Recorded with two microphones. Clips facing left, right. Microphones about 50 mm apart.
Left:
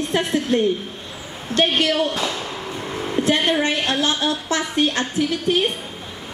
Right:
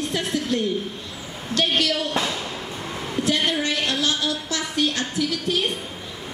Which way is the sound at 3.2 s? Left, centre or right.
Left.